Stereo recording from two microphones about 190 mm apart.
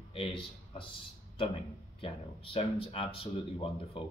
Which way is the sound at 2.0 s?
30° left (ahead or behind).